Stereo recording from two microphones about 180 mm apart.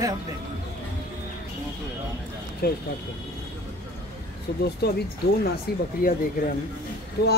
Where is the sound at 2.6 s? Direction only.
60° left (ahead or behind).